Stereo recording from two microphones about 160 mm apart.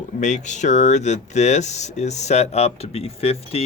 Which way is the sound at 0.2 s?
50° left (ahead or behind).